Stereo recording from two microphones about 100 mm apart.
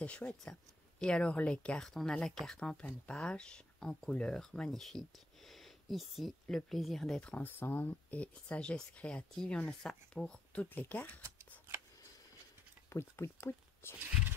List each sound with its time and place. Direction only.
0.0 s speech: 10° left (ahead or behind)
5.5 s a sound: centre (ahead or behind)
6.5 s speech: centre (ahead or behind)
12.9 s speech: 25° left (ahead or behind)